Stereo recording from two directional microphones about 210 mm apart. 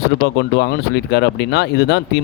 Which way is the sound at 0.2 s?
50° left (ahead or behind).